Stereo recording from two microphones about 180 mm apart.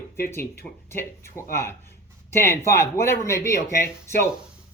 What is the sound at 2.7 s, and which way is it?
Speech, 15° left (ahead or behind).